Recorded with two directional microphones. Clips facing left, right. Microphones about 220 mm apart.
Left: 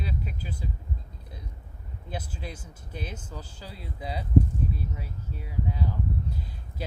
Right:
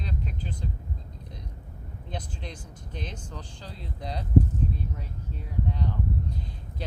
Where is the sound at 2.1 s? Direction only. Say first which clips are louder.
Left 1 dB; 5° left (ahead or behind).